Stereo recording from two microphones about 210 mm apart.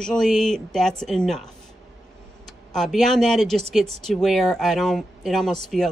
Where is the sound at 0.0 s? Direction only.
5° left (ahead or behind).